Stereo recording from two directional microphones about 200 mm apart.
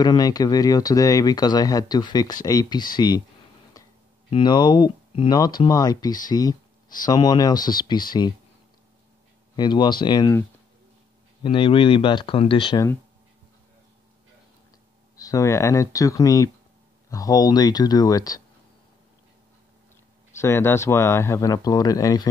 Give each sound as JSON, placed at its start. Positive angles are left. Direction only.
{"t": 0.0, "sound": "speech", "side_deg": 20}
{"t": 3.8, "sound": "a sound", "side_deg": 20}
{"t": 4.3, "sound": "speech", "side_deg": 20}
{"t": 9.6, "sound": "speech", "side_deg": 20}
{"t": 11.4, "sound": "speech", "side_deg": 25}
{"t": 15.1, "sound": "speech", "side_deg": 15}
{"t": 20.3, "sound": "speech", "side_deg": 10}